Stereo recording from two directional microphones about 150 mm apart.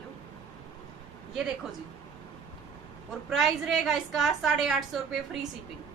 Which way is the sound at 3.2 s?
Centre (ahead or behind).